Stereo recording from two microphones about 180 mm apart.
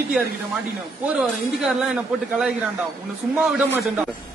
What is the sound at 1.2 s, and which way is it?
A man's voice, centre (ahead or behind).